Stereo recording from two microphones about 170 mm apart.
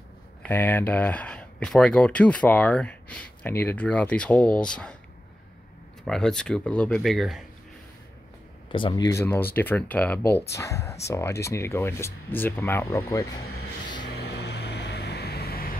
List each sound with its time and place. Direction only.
0.4 s speech: 10° left (ahead or behind)
6.0 s speech: 5° left (ahead or behind)
8.7 s speech: 25° left (ahead or behind)
9.2 s speech: 15° left (ahead or behind)
14.1 s vehicle: 80° left; by 15.7 s 65° left (ahead or behind)